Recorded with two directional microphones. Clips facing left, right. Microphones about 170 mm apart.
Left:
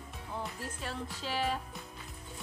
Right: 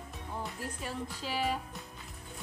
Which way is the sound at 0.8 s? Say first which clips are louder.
Even; 10° right (ahead or behind).